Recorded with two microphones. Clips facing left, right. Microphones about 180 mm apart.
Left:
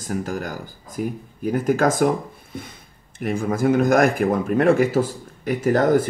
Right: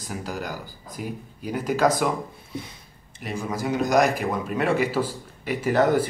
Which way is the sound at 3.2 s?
50° left (ahead or behind).